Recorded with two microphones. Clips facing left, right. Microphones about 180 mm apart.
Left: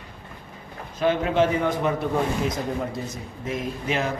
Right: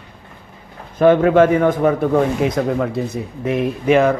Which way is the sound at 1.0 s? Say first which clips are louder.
Right 10 dB; 55° right (ahead or behind).